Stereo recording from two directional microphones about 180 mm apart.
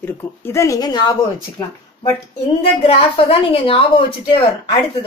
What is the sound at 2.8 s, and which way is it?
A woman's voice, 30° left (ahead or behind).